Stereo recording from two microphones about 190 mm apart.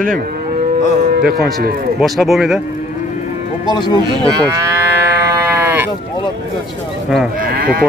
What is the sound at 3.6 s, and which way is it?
Speech, 20° left (ahead or behind).